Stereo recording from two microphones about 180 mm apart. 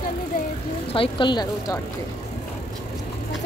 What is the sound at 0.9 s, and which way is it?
Speech, 30° left (ahead or behind).